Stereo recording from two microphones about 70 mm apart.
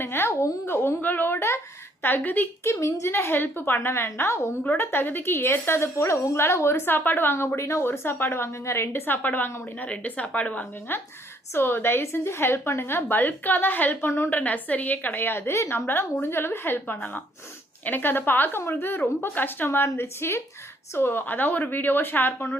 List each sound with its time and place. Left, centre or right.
0.0 s a sound: left
0.6 s a woman's voice: left
2.6 s a woman's voice: left
14.3 s a woman's voice: left